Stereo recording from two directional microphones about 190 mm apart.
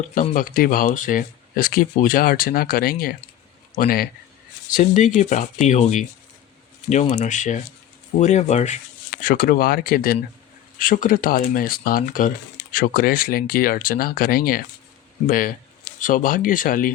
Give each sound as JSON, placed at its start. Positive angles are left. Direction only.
{"t": 0.1, "sound": "speech", "side_deg": 45}
{"t": 4.7, "sound": "speech", "side_deg": 40}
{"t": 9.2, "sound": "speech", "side_deg": 50}